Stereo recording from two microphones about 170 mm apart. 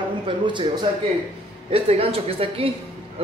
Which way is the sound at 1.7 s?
35° right (ahead or behind).